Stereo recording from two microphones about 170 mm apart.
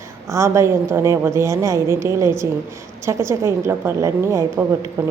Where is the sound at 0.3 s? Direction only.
15° right (ahead or behind).